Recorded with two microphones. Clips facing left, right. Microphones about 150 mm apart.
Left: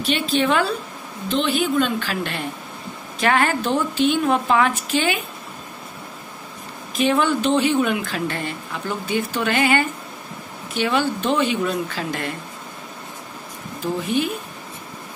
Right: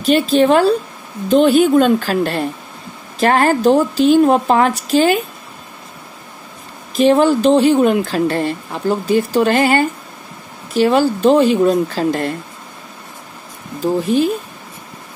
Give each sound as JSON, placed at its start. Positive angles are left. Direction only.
{"t": 0.0, "sound": "a woman's voice", "side_deg": -40}
{"t": 7.0, "sound": "a woman's voice", "side_deg": -35}
{"t": 14.0, "sound": "a woman's voice", "side_deg": -35}